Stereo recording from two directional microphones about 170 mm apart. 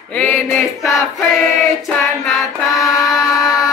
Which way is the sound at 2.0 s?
Centre (ahead or behind).